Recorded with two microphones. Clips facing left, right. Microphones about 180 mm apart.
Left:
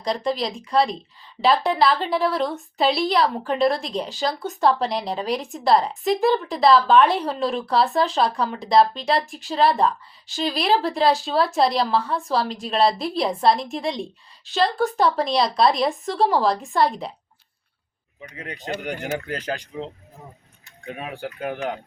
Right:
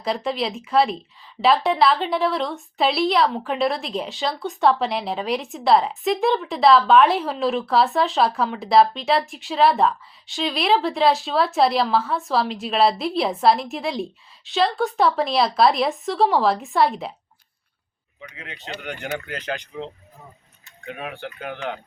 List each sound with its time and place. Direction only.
0.0 s a woman's voice: centre (ahead or behind)
18.3 s speech: 40° left (ahead or behind)
19.7 s speech: 25° left (ahead or behind)